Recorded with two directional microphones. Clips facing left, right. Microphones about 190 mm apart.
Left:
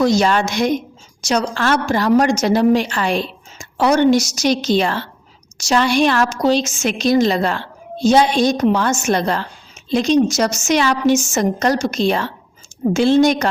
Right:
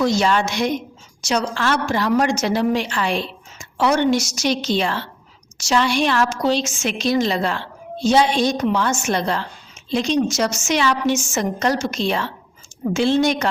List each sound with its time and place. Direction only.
0.0 s a woman's voice: 40° left (ahead or behind)